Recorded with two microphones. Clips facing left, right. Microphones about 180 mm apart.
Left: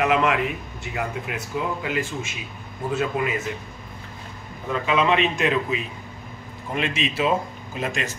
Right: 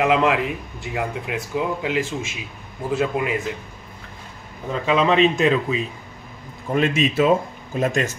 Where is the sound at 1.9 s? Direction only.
90° right.